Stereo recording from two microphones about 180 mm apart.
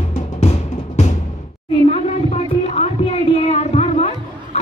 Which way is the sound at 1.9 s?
35° left (ahead or behind).